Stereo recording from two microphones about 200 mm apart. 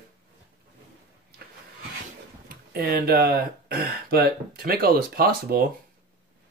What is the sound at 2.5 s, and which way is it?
Speech, 50° right (ahead or behind).